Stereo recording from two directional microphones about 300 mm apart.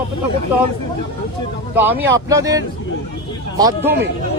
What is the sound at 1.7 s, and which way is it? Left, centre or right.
Speech, centre.